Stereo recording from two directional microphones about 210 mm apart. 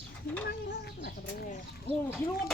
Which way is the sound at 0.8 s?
50° left (ahead or behind).